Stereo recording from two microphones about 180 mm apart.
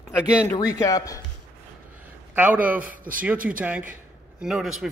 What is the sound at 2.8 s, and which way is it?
Speech, 50° right (ahead or behind).